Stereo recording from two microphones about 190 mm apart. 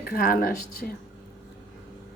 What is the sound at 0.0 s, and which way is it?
Speech, 50° left (ahead or behind).